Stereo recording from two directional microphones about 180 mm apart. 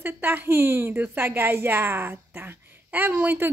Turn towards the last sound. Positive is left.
turn(degrees=-10)  # may be behind; listen again after turning